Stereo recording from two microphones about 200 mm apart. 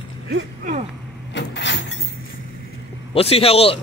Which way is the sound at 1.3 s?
60° left (ahead or behind).